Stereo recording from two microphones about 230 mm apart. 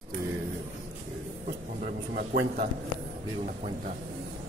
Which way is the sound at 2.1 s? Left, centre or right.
Right.